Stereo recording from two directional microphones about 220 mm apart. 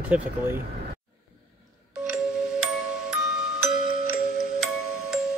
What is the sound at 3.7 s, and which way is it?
Music, 5° right (ahead or behind).